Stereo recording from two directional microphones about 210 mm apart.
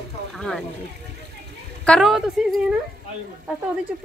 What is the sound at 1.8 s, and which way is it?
Speech, centre (ahead or behind).